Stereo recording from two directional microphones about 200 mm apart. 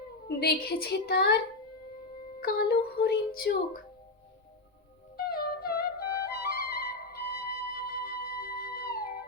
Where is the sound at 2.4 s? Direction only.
55° left (ahead or behind).